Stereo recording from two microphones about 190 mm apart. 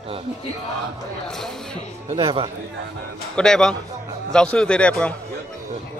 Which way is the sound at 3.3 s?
5° left (ahead or behind).